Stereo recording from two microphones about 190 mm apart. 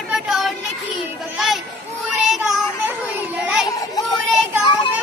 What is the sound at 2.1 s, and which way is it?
Music, centre (ahead or behind).